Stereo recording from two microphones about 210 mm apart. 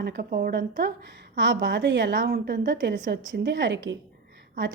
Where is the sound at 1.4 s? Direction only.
60° right (ahead or behind).